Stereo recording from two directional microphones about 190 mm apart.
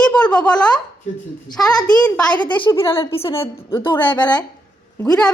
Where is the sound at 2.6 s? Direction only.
25° left (ahead or behind).